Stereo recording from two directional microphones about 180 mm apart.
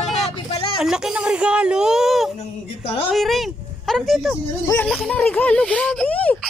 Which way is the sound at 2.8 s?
30° left (ahead or behind).